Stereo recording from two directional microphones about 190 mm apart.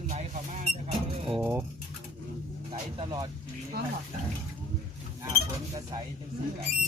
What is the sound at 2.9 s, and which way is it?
Speech, 25° right (ahead or behind).